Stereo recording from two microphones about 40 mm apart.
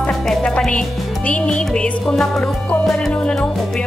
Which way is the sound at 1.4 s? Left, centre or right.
Left.